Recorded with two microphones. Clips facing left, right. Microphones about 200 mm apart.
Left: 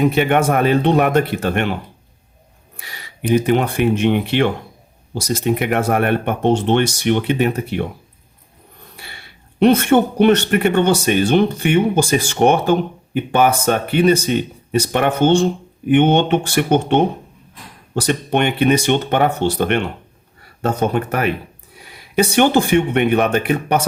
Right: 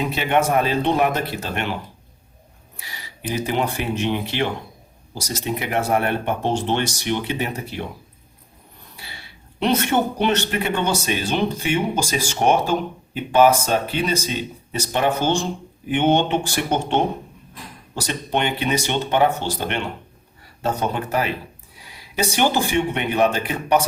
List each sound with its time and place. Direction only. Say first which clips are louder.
0.0 s speech: left 5 dB; 55° left (ahead or behind)
2.7 s speech: left 2 dB; 60° left (ahead or behind)
5.5 s speech: left 4 dB; 60° left (ahead or behind)
9.6 s speech: left 7 dB; 55° left (ahead or behind)
18.0 s speech: left 5 dB; 55° left (ahead or behind)
22.3 s speech: left 6 dB; 60° left (ahead or behind)